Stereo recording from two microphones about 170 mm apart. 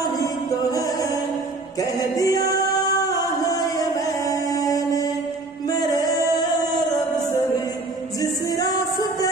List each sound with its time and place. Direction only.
0.0 s music: 25° left (ahead or behind)
8.2 s music: 20° left (ahead or behind)